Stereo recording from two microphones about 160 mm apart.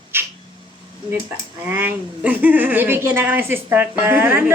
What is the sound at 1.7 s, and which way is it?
A woman's voice, 10° right (ahead or behind).